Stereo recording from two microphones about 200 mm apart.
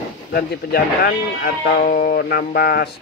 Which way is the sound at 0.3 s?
50° left (ahead or behind).